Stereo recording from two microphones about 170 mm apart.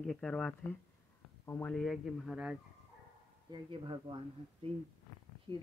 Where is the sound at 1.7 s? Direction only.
5° left (ahead or behind).